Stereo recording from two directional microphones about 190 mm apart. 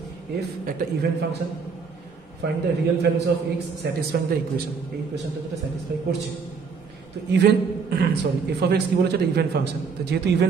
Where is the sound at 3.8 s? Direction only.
60° right (ahead or behind).